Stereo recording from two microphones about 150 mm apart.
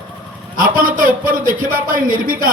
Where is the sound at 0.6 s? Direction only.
65° right (ahead or behind).